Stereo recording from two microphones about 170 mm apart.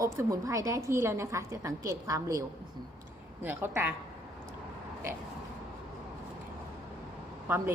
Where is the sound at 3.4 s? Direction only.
10° right (ahead or behind).